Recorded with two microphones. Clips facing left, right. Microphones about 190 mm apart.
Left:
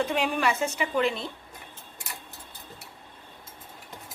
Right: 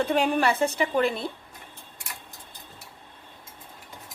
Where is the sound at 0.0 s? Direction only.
35° right (ahead or behind).